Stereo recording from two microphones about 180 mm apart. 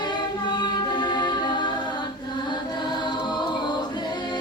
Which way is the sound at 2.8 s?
25° left (ahead or behind).